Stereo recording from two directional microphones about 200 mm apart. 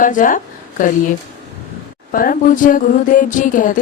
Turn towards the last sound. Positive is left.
turn(degrees=40)  # may be behind; listen again after turning